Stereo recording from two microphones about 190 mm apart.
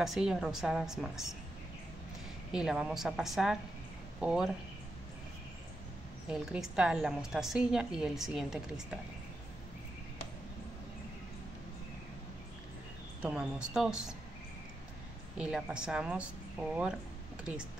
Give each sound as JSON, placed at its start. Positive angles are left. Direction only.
{"t": 0.0, "sound": "a woman's voice", "side_deg": 0}
{"t": 2.5, "sound": "a woman's voice", "side_deg": -5}
{"t": 6.2, "sound": "a woman's voice", "side_deg": -5}
{"t": 13.2, "sound": "a woman's voice", "side_deg": -5}
{"t": 15.3, "sound": "a woman's voice", "side_deg": -5}